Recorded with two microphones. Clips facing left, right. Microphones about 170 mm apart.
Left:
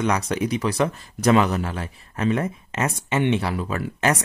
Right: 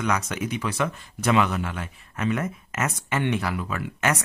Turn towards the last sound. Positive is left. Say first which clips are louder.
# left 3 dB
turn(degrees=35)  # may be behind; listen again after turning